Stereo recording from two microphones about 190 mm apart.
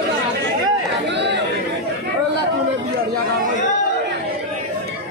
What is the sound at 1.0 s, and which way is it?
Chatter, 65° right (ahead or behind).